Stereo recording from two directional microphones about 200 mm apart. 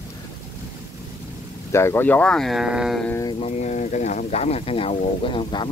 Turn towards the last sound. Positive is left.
turn(degrees=25)  # may be behind; listen again after turning